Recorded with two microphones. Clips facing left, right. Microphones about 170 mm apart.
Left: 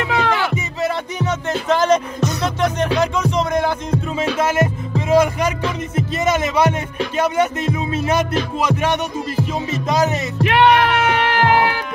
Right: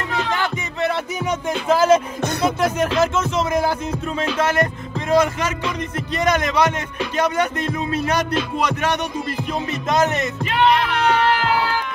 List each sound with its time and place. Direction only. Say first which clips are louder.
0.0 s music: left 4 dB; 70° left (ahead or behind)
1.2 s music: left 2 dB; 5° right (ahead or behind)
2.4 s speech: right 2 dB; 5° right (ahead or behind)
4.2 s music: left 1 dB; 10° left (ahead or behind)
9.7 s music: even; centre (ahead or behind)
10.4 s music: left 5 dB; 65° left (ahead or behind)